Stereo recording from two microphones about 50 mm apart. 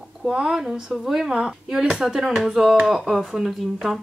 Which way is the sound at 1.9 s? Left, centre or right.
Right.